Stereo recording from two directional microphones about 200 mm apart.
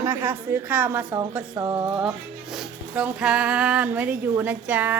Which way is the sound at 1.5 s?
15° right (ahead or behind).